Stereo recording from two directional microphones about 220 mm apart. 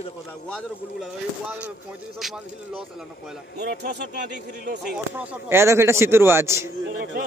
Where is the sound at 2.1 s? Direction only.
Centre (ahead or behind).